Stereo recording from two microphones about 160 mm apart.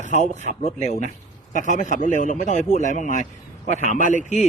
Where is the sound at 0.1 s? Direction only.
45° left (ahead or behind).